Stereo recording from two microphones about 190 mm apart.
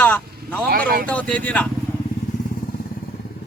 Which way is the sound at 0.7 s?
50° right (ahead or behind).